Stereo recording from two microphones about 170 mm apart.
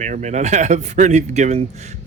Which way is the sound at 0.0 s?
45° right (ahead or behind).